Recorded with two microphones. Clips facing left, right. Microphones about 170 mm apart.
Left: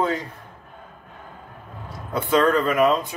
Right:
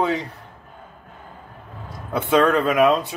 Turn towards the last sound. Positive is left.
turn(degrees=-70)  # may be behind; listen again after turning